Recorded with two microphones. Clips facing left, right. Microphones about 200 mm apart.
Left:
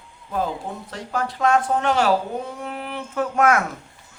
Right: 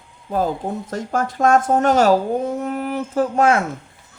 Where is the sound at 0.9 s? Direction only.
45° right (ahead or behind).